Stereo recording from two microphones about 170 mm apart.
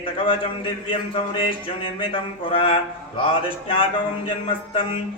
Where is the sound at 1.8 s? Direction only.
30° left (ahead or behind).